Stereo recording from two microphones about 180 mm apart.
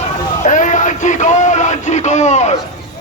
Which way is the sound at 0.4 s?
45° left (ahead or behind).